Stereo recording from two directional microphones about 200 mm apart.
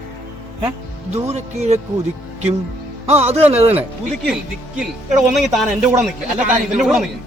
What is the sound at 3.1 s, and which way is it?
Speech, 30° right (ahead or behind).